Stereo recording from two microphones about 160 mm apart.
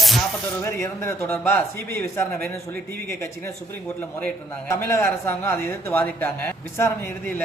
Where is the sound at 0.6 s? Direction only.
15° left (ahead or behind).